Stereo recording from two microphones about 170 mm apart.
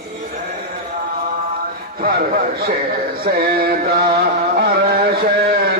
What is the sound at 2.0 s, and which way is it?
Music, 60° right (ahead or behind).